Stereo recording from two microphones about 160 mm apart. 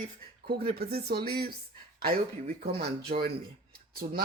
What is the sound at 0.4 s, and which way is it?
Speech, 75° right (ahead or behind).